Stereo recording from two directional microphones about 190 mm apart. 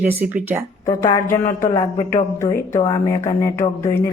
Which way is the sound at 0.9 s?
15° left (ahead or behind).